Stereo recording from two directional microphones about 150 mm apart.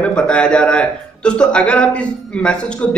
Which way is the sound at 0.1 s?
5° left (ahead or behind).